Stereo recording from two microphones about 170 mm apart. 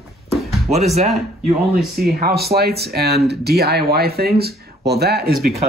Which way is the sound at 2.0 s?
65° right (ahead or behind).